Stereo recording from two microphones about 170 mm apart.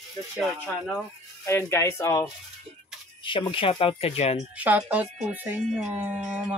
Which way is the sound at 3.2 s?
30° left (ahead or behind).